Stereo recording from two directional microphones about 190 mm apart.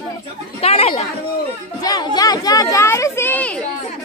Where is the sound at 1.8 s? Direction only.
20° left (ahead or behind).